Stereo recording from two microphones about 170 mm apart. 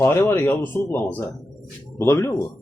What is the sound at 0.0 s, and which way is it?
Speech, 15° left (ahead or behind).